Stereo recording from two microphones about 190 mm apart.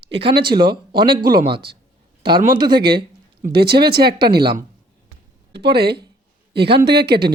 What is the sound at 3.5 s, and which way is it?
Speech, 55° right (ahead or behind).